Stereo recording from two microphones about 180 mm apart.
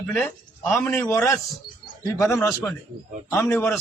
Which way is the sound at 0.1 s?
10° left (ahead or behind).